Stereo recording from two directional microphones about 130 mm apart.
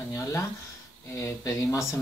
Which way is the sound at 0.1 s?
25° left (ahead or behind).